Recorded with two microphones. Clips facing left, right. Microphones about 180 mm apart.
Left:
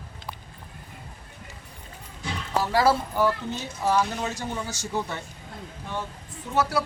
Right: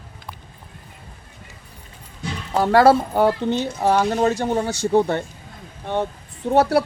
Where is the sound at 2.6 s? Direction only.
60° right (ahead or behind).